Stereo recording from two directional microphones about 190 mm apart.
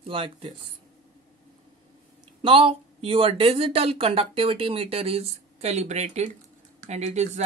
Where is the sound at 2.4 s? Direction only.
30° right (ahead or behind).